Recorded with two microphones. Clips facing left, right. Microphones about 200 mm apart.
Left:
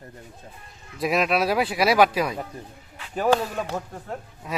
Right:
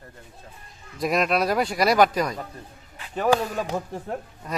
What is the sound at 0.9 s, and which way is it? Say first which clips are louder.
Speech: even; centre (ahead or behind).